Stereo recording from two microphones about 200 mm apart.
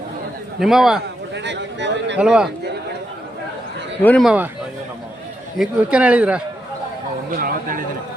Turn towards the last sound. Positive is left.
turn(degrees=-45)  # may be behind; listen again after turning